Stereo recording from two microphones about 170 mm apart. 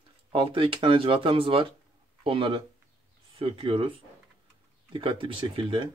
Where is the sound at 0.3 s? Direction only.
30° right (ahead or behind).